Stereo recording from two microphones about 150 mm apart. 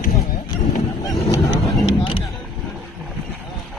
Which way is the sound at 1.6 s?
35° left (ahead or behind).